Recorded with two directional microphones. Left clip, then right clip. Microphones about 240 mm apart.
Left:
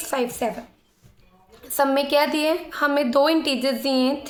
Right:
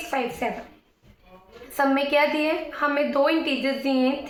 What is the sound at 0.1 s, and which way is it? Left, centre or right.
Speech, left.